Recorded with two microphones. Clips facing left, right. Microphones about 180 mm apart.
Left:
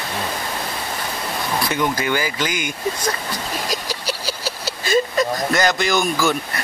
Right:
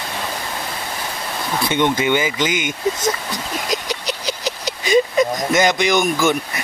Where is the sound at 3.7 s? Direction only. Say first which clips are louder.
Right 2 dB; 20° right (ahead or behind).